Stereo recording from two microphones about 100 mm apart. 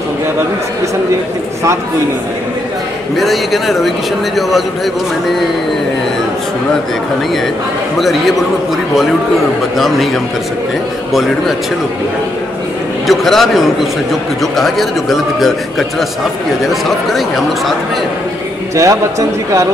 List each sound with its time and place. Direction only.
3.2 s a man's voice: centre (ahead or behind)
8.0 s a man's voice: centre (ahead or behind)
9.8 s a man's voice: centre (ahead or behind)
13.0 s a man's voice: centre (ahead or behind)
18.8 s a man's voice: 30° right (ahead or behind)